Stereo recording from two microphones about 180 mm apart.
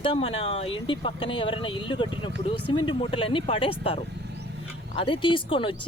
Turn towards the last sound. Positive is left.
turn(degrees=30)  # may be behind; listen again after turning